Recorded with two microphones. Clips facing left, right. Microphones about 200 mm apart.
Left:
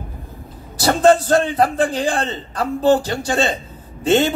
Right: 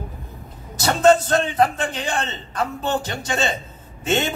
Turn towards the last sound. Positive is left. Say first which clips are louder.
# left 6 dB
turn(degrees=35)  # may be behind; listen again after turning